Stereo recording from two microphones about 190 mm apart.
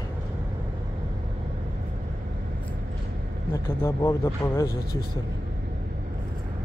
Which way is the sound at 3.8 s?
10° left (ahead or behind).